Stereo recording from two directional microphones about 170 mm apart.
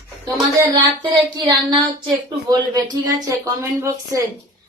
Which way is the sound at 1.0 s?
25° right (ahead or behind).